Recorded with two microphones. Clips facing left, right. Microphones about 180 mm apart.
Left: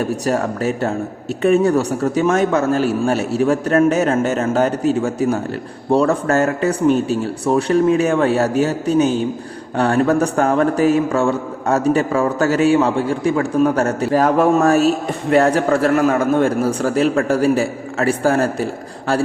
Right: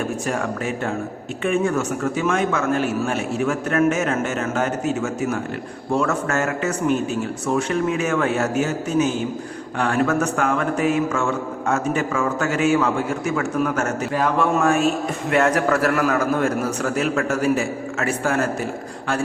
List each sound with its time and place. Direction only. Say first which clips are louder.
0.0 s a man's voice: left 5 dB; 40° left (ahead or behind)